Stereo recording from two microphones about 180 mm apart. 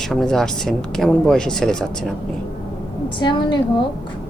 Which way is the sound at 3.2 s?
25° left (ahead or behind).